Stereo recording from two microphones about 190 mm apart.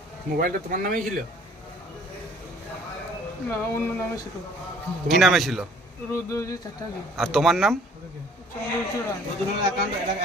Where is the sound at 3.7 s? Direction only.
15° left (ahead or behind).